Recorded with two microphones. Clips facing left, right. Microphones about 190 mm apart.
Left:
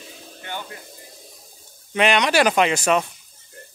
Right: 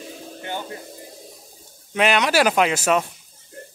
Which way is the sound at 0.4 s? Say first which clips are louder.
Right 3 dB; 25° right (ahead or behind).